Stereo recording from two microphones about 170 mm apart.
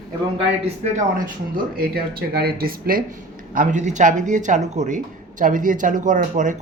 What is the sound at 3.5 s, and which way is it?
Speech, 45° right (ahead or behind).